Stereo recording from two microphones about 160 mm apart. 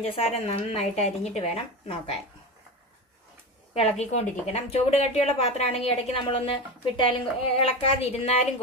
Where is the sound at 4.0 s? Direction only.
45° left (ahead or behind).